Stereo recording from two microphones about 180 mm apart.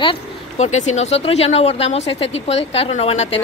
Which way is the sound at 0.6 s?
40° left (ahead or behind).